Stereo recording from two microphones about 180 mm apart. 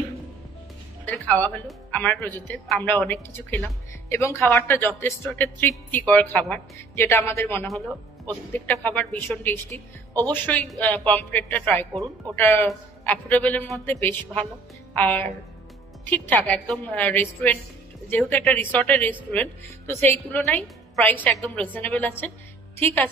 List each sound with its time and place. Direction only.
1.0 s a woman's voice: 10° left (ahead or behind)
8.8 s a woman's voice: 5° left (ahead or behind)
11.9 s speech: 20° right (ahead or behind)
12.4 s a woman's voice: 10° left (ahead or behind)